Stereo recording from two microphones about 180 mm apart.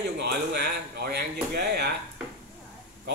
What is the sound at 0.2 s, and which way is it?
A man's voice, 65° right (ahead or behind).